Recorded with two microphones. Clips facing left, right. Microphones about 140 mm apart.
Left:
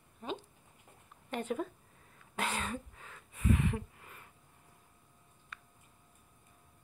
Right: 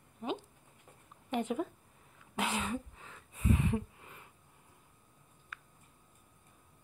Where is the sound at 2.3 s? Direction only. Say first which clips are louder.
Right 2 dB; 15° right (ahead or behind).